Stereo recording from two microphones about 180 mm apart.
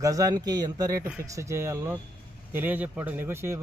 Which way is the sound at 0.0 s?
20° right (ahead or behind).